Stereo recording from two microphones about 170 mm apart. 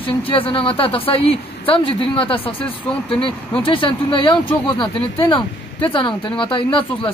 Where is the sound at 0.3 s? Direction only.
30° left (ahead or behind).